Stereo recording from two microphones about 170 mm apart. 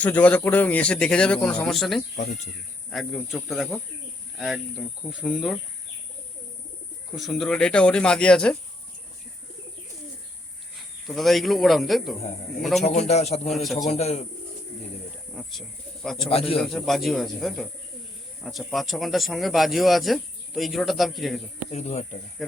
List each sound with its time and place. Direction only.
0.0 s speech: 10° left (ahead or behind)
2.2 s speech: 50° left (ahead or behind)
2.9 s speech: centre (ahead or behind)
7.2 s speech: centre (ahead or behind)
11.0 s speech: centre (ahead or behind)
12.8 s a man's voice: 40° left (ahead or behind)
13.5 s speech: centre (ahead or behind)
13.8 s a man's voice: 40° left (ahead or behind)
15.3 s speech: centre (ahead or behind)
16.3 s a man's voice: 35° left (ahead or behind)
16.6 s speech: centre (ahead or behind)
21.7 s a man's voice: 40° left (ahead or behind)
22.4 s speech: centre (ahead or behind)